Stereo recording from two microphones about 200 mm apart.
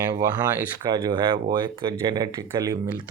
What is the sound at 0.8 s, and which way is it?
Speech, 20° right (ahead or behind).